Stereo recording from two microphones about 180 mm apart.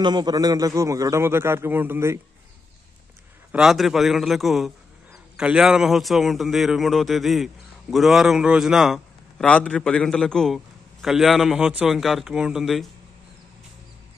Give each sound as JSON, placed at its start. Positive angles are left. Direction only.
{"t": 0.0, "sound": "a man's voice", "side_deg": -25}
{"t": 3.5, "sound": "a man's voice", "side_deg": 0}